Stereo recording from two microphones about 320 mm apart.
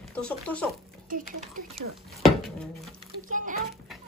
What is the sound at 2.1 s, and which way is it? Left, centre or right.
Speech, centre.